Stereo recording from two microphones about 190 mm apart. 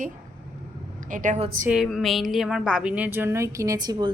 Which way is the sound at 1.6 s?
5° right (ahead or behind).